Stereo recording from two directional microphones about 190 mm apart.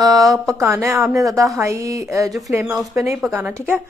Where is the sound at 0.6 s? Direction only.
15° right (ahead or behind).